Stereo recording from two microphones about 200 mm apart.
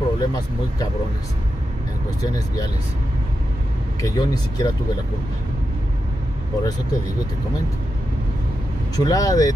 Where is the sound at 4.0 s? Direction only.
20° left (ahead or behind).